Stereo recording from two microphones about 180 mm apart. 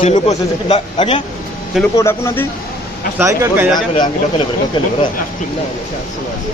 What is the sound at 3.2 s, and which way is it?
Speech, 15° right (ahead or behind).